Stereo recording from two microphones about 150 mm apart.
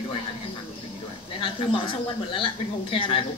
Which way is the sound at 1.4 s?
35° left (ahead or behind).